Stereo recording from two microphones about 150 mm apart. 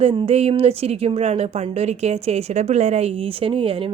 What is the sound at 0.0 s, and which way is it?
Speech, 40° right (ahead or behind).